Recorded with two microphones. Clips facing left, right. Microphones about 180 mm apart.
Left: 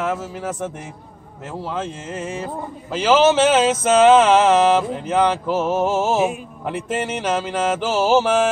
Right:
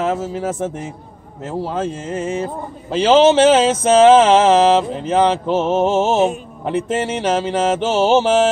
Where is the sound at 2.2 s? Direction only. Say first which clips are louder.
Right 4 dB; 20° right (ahead or behind).